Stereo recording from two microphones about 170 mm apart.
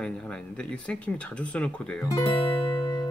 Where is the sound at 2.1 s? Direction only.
30° left (ahead or behind).